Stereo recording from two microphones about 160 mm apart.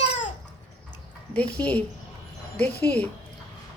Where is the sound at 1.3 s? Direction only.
10° left (ahead or behind).